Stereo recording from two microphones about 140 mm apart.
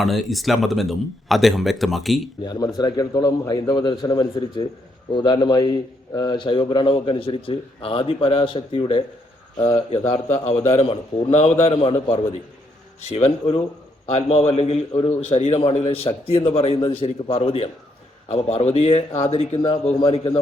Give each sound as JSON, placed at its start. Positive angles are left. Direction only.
{"t": 0.0, "sound": "speech", "side_deg": 0}
{"t": 2.4, "sound": "a man's voice", "side_deg": 30}
{"t": 9.9, "sound": "a man's voice", "side_deg": 50}